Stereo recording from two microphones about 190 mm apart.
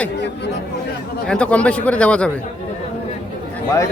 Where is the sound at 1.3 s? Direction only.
5° left (ahead or behind).